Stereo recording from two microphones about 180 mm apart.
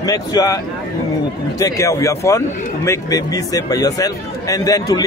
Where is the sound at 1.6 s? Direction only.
15° left (ahead or behind).